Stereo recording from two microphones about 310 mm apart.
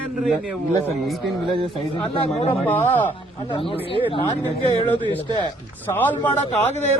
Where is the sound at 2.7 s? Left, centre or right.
Centre.